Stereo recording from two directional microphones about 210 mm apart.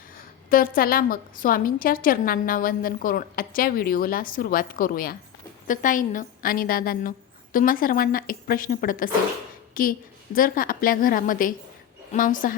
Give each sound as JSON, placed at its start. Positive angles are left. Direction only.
{"t": 0.5, "sound": "a woman's voice", "side_deg": 40}